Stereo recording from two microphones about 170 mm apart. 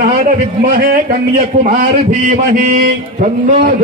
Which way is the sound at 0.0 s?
55° right (ahead or behind).